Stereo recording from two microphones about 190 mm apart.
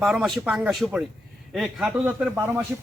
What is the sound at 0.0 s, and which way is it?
Speech, centre (ahead or behind).